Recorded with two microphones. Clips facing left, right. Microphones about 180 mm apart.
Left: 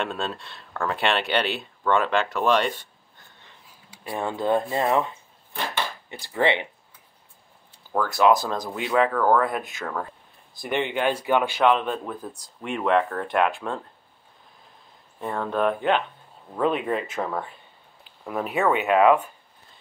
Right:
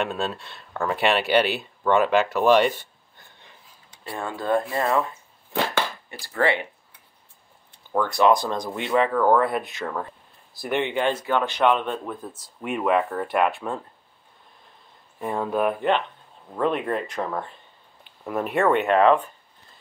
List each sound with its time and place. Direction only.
0.0 s speech: 5° right (ahead or behind)
3.9 s speech: 15° left (ahead or behind)
7.9 s speech: 5° left (ahead or behind)
15.1 s speech: 10° right (ahead or behind); by 19.3 s 10° left (ahead or behind)